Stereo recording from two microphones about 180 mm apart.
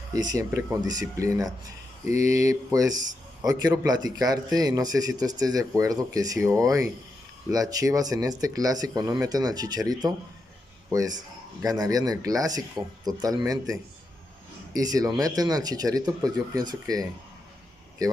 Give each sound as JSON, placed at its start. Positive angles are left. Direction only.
{"t": 0.1, "sound": "speech", "side_deg": -20}
{"t": 11.6, "sound": "speech", "side_deg": -20}